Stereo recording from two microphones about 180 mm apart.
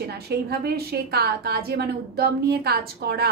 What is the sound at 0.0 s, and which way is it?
A woman's voice, 65° right (ahead or behind).